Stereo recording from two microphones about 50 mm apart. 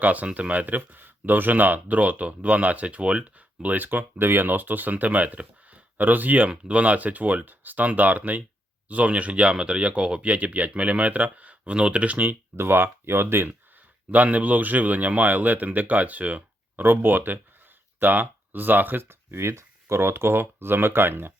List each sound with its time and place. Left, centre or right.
0.0 s speech: right
3.8 s speech: right
12.5 s speech: right
14.1 s speech: right
16.8 s speech: right
19.3 s speech: right